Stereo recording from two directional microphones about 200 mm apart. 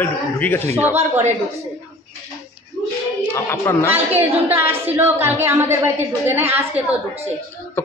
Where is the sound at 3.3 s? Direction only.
10° left (ahead or behind).